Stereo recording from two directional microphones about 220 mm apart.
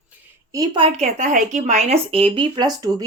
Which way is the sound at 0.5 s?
20° right (ahead or behind).